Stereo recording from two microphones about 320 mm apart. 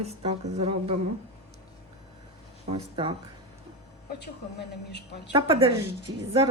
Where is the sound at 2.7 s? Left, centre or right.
Centre.